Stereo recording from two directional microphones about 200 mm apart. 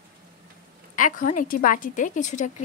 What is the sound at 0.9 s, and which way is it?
Speech, 40° left (ahead or behind).